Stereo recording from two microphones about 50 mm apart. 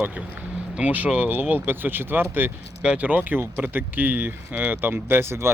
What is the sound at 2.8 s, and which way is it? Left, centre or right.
Speech, right.